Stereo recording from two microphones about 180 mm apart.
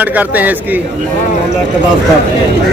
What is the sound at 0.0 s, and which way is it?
Speech, 10° right (ahead or behind).